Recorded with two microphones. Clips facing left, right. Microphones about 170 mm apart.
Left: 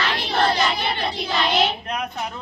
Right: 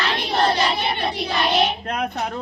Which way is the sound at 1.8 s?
55° right (ahead or behind).